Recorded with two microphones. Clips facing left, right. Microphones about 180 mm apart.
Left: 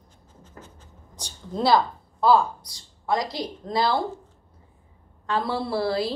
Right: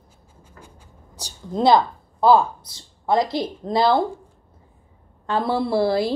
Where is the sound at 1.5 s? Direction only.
20° right (ahead or behind).